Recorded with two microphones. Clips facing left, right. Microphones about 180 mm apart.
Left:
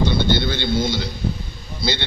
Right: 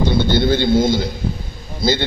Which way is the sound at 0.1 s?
50° right (ahead or behind).